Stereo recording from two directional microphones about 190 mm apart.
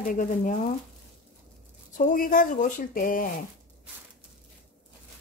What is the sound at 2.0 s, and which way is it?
Speech, 45° left (ahead or behind).